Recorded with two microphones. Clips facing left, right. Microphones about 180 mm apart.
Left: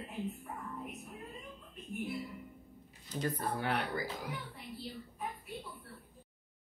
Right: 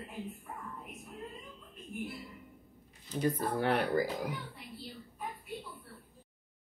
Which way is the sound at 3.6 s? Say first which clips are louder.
Right 9 dB; 45° right (ahead or behind).